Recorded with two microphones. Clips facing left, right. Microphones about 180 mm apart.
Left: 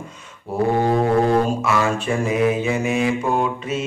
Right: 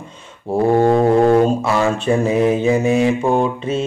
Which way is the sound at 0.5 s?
30° right (ahead or behind).